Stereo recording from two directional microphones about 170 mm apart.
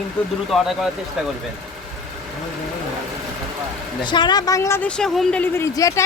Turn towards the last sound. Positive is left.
turn(degrees=20)  # may be behind; listen again after turning